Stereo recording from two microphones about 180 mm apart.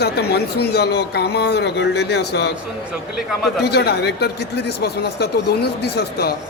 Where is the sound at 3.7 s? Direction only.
65° left (ahead or behind).